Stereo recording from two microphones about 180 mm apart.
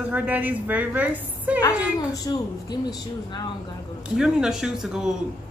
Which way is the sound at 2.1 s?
20° left (ahead or behind).